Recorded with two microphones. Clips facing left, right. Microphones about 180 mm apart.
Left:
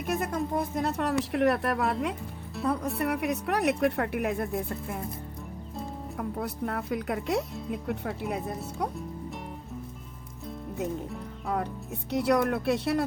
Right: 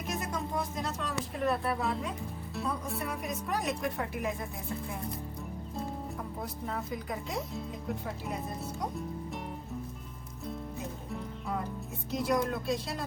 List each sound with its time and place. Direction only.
0.1 s speech: 55° left (ahead or behind); by 2.1 s 70° left (ahead or behind)
2.6 s speech: centre (ahead or behind)
3.0 s speech: 70° left (ahead or behind)
6.4 s speech: 70° left (ahead or behind)
11.4 s speech: 65° left (ahead or behind)